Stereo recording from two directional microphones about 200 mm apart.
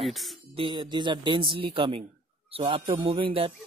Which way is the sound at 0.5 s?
25° right (ahead or behind).